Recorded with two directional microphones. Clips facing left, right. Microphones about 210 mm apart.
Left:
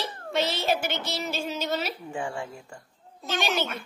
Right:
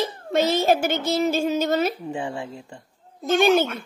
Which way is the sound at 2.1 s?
20° right (ahead or behind).